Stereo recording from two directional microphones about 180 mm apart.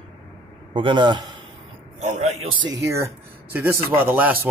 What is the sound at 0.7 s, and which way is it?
Speech, 25° right (ahead or behind).